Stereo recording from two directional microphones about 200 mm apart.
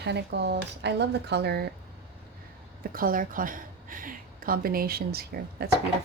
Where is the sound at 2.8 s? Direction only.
45° right (ahead or behind).